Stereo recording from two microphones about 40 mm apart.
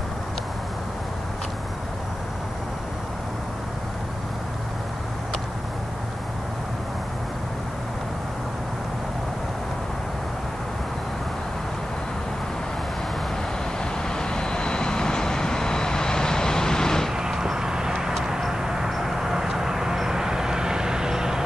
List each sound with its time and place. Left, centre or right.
14.1 s vehicle: centre
17.1 s vehicle: centre
18.5 s a sound: centre
18.9 s vehicle: centre